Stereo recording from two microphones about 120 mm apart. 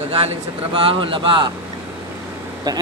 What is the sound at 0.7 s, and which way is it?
Speech, 45° right (ahead or behind).